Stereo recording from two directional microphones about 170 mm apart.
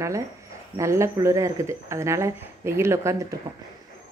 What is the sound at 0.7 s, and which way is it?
Speech, 15° right (ahead or behind).